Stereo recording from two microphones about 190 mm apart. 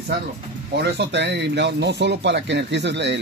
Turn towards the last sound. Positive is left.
turn(degrees=-65)  # may be behind; listen again after turning